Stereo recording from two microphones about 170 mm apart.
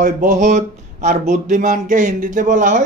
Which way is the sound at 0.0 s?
50° right (ahead or behind).